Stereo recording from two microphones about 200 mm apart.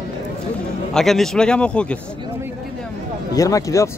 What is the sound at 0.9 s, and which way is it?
Speech, centre (ahead or behind).